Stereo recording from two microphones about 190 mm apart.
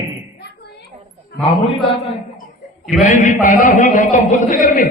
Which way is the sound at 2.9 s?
40° left (ahead or behind).